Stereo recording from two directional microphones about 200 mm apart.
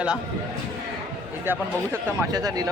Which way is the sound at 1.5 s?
10° right (ahead or behind).